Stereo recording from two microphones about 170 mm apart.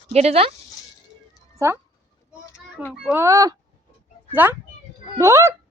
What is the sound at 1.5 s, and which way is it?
Speech, 15° right (ahead or behind).